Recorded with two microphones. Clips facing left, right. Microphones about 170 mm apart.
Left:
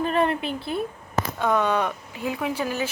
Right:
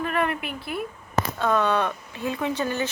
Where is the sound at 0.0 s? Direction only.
30° left (ahead or behind).